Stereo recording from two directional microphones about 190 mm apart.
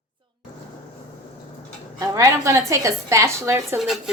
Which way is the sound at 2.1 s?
15° right (ahead or behind).